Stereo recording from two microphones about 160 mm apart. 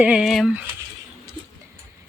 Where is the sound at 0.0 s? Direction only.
5° right (ahead or behind).